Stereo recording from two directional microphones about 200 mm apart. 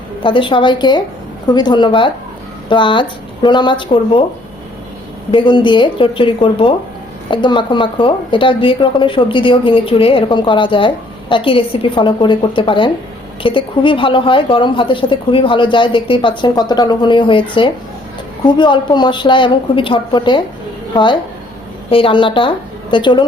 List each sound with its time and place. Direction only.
0.2 s a woman's voice: 25° left (ahead or behind)
5.3 s a woman's voice: 25° left (ahead or behind)
18.4 s a woman's voice: 25° left (ahead or behind)